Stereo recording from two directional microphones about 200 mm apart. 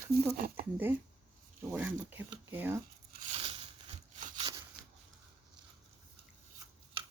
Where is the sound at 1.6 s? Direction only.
10° right (ahead or behind).